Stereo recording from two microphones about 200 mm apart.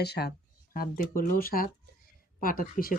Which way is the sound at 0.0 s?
55° left (ahead or behind).